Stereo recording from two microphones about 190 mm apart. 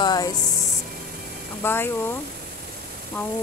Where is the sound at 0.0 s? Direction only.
20° left (ahead or behind).